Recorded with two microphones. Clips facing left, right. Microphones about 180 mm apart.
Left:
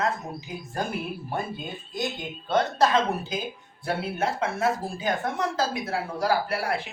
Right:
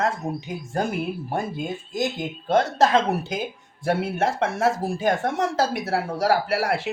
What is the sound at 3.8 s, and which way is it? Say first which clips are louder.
Speech: right 5 dB; 80° right.